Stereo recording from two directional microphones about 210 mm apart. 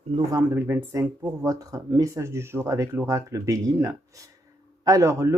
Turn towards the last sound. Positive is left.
turn(degrees=-15)  # may be behind; listen again after turning